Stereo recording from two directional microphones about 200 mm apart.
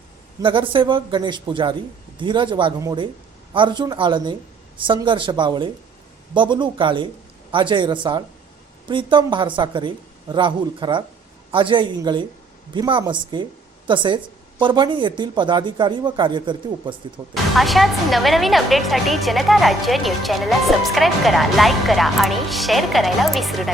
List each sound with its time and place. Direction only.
0.4 s speech: 25° right (ahead or behind)
17.3 s speech: centre (ahead or behind)